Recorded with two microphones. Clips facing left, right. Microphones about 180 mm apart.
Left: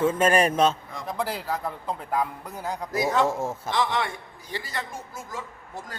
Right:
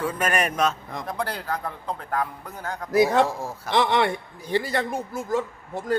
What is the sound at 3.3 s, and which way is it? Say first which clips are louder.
Speech: left 4 dB; 25° left (ahead or behind).